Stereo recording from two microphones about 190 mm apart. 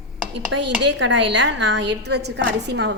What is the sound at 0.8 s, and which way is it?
A woman's voice, 70° right (ahead or behind).